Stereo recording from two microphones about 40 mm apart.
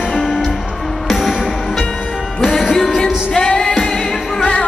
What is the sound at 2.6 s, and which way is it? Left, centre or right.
Music, centre.